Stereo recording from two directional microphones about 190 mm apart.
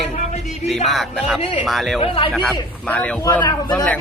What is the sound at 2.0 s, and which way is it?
Speech, 30° left (ahead or behind).